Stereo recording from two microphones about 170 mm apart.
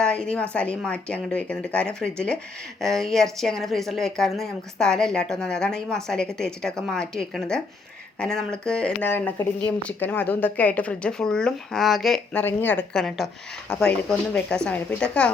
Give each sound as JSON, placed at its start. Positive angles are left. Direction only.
{"t": 0.0, "sound": "a woman's voice", "side_deg": 5}